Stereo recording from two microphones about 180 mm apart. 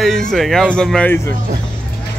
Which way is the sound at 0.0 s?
Centre (ahead or behind).